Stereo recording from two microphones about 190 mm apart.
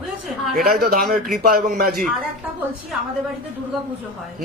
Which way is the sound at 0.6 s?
50° right (ahead or behind).